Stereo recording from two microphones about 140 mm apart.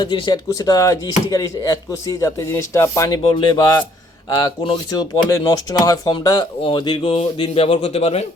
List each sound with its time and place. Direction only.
0.0 s speech: 35° left (ahead or behind)
3.2 s speech: 35° left (ahead or behind)